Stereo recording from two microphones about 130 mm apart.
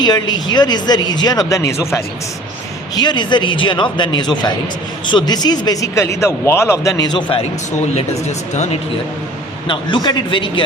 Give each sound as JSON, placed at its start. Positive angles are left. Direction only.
{"t": 0.0, "sound": "speech", "side_deg": 35}
{"t": 2.9, "sound": "speech", "side_deg": 35}
{"t": 8.5, "sound": "speech", "side_deg": 60}
{"t": 9.6, "sound": "speech", "side_deg": 35}